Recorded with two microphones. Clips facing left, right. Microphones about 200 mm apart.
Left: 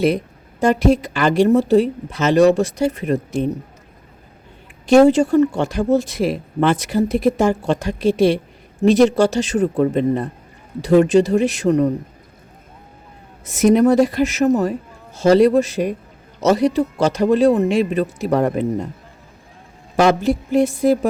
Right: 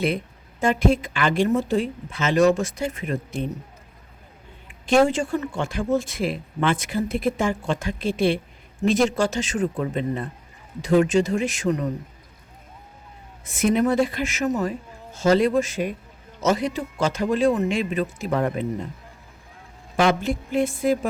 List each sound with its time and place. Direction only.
0.6 s speech: 40° left (ahead or behind)
4.9 s speech: 40° left (ahead or behind)
13.4 s speech: 40° left (ahead or behind)
20.0 s speech: 40° left (ahead or behind)